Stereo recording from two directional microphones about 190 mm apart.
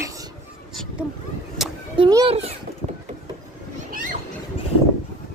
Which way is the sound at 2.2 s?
30° right (ahead or behind).